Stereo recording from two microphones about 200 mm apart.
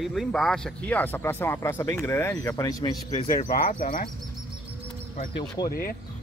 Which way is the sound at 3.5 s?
50° left (ahead or behind).